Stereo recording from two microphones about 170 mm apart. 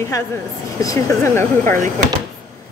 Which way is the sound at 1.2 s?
15° left (ahead or behind).